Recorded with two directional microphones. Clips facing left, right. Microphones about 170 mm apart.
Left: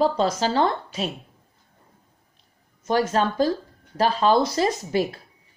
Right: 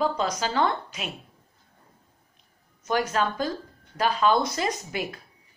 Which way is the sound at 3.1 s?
35° left (ahead or behind).